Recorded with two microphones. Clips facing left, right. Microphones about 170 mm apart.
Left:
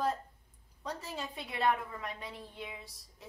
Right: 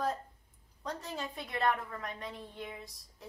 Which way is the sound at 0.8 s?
Centre (ahead or behind).